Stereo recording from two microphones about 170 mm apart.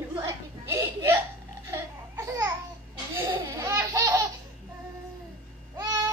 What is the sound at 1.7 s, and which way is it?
Laughter, 20° right (ahead or behind).